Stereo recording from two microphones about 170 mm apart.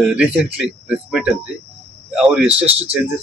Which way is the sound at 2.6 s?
35° right (ahead or behind).